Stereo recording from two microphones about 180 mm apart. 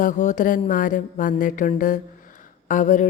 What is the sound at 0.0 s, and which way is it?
Speech, 45° left (ahead or behind).